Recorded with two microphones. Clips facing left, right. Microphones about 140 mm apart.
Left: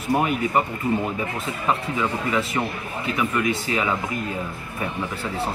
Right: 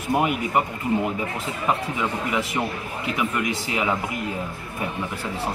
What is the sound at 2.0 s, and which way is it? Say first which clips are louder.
Speech: left 1 dB; 15° right (ahead or behind).